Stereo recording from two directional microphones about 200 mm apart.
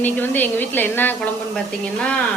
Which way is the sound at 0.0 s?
10° left (ahead or behind).